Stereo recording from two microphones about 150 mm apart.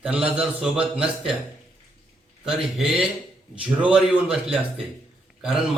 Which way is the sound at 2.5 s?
Centre (ahead or behind).